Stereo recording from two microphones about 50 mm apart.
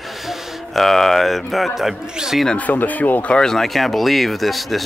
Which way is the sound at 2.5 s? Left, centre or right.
Left.